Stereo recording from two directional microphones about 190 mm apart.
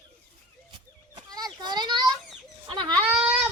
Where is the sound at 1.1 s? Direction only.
20° right (ahead or behind).